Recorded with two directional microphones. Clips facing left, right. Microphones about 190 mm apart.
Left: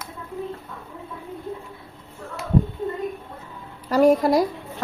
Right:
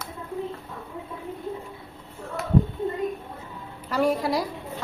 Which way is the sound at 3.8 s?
40° left (ahead or behind).